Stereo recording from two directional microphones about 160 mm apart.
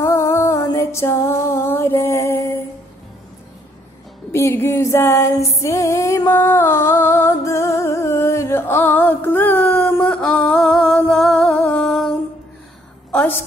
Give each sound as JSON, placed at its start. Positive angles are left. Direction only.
{"t": 0.0, "sound": "music", "side_deg": 15}
{"t": 4.3, "sound": "music", "side_deg": 15}
{"t": 13.1, "sound": "a sound", "side_deg": 10}